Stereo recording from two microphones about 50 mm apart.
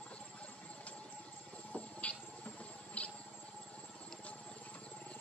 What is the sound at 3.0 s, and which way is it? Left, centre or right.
Insect, left.